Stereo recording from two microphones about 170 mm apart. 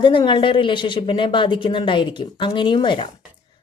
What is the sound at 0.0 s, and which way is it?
Speech, 30° left (ahead or behind).